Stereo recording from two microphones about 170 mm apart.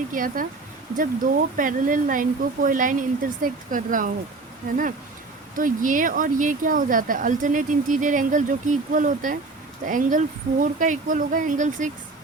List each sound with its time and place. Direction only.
0.1 s speech: 50° right (ahead or behind)
5.5 s speech: 50° right (ahead or behind)